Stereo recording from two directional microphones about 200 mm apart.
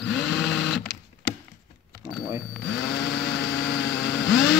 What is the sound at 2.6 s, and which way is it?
Chainsaw, 55° left (ahead or behind).